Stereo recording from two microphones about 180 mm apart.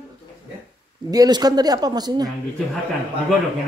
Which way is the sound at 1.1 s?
20° right (ahead or behind).